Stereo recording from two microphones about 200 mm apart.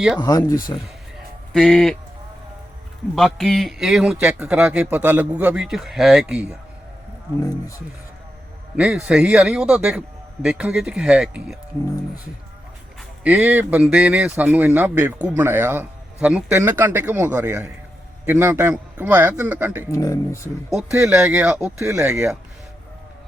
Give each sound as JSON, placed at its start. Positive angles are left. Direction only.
{"t": 0.2, "sound": "speech", "side_deg": 20}
{"t": 1.5, "sound": "a man's voice", "side_deg": 0}
{"t": 3.2, "sound": "a man's voice", "side_deg": 0}
{"t": 8.7, "sound": "a man's voice", "side_deg": -5}
{"t": 13.0, "sound": "a man's voice", "side_deg": -5}
{"t": 19.9, "sound": "speech", "side_deg": 15}
{"t": 21.0, "sound": "a man's voice", "side_deg": -5}